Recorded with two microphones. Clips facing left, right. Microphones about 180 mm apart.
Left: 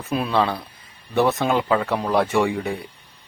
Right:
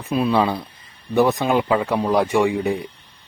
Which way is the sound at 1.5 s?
15° right (ahead or behind).